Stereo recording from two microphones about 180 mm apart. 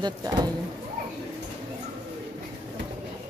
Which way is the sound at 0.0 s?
20° right (ahead or behind).